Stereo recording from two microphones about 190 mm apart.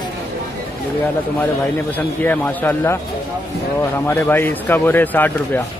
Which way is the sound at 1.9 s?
10° left (ahead or behind).